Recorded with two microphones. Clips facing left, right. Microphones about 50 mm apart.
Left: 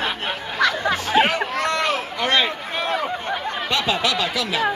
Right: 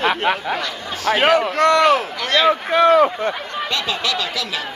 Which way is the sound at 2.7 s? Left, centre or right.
Right.